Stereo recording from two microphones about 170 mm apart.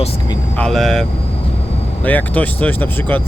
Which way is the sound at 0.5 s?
5° left (ahead or behind).